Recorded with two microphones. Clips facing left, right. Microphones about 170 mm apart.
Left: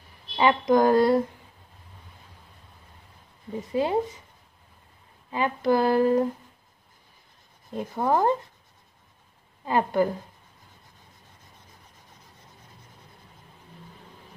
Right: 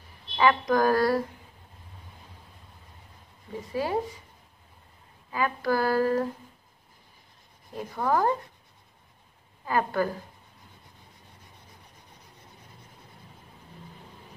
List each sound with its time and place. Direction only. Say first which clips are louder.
0.4 s speech: left 3 dB; 20° left (ahead or behind)
3.7 s speech: left 4 dB; 20° left (ahead or behind)
5.3 s speech: left 4 dB; 20° left (ahead or behind)
7.7 s speech: left 2 dB; 20° left (ahead or behind)
9.7 s a woman's voice: left 3 dB; 20° left (ahead or behind)